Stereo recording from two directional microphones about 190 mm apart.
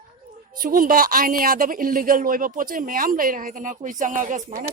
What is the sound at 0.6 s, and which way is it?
A woman's voice, 50° right (ahead or behind).